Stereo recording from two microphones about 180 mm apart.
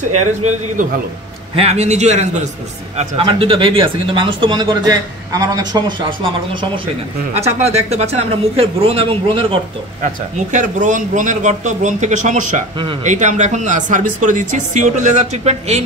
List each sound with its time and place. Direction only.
0.4 s speech: 40° right (ahead or behind)
10.0 s a man's voice: 45° right (ahead or behind)